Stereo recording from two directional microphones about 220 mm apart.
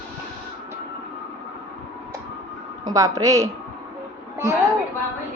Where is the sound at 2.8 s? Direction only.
15° right (ahead or behind).